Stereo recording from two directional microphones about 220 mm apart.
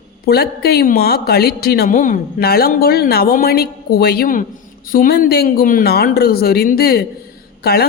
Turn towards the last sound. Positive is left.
turn(degrees=45)  # may be behind; listen again after turning